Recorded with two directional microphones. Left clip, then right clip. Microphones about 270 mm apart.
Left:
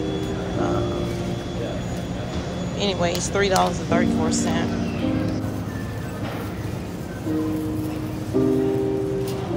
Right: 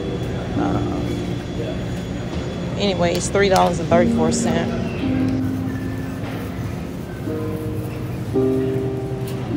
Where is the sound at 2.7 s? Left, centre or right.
Centre.